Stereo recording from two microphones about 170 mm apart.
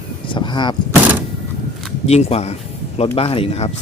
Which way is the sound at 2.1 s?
40° left (ahead or behind).